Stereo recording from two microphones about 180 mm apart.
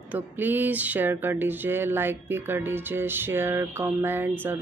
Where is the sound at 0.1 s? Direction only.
10° right (ahead or behind).